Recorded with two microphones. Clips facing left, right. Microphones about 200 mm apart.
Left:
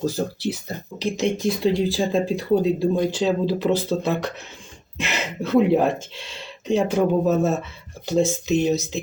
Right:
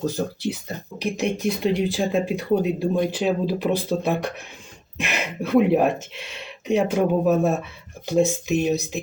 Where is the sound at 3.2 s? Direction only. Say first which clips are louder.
Left 1 dB; 15° right (ahead or behind).